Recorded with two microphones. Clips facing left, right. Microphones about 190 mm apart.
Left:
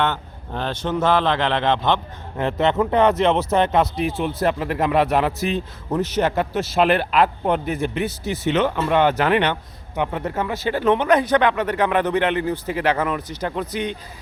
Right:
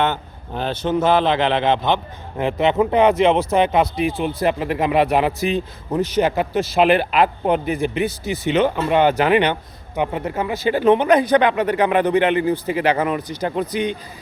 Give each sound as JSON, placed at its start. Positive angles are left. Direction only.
{"t": 0.6, "sound": "speech", "side_deg": -5}
{"t": 3.3, "sound": "speech", "side_deg": 0}